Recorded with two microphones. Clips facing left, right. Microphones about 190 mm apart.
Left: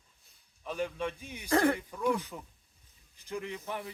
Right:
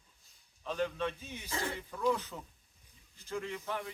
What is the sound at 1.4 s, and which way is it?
Speech, 60° left (ahead or behind).